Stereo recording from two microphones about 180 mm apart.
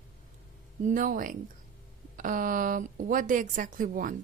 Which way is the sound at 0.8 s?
50° right (ahead or behind).